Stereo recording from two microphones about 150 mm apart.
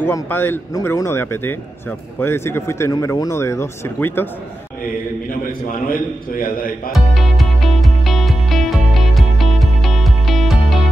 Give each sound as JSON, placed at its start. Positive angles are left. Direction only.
{"t": 0.0, "sound": "a man's voice", "side_deg": 15}
{"t": 6.9, "sound": "music", "side_deg": 0}